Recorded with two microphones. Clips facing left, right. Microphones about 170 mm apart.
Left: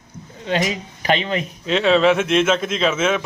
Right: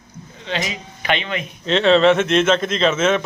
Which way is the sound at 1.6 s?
5° left (ahead or behind).